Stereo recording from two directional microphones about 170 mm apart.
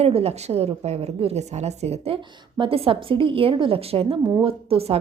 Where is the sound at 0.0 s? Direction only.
35° right (ahead or behind).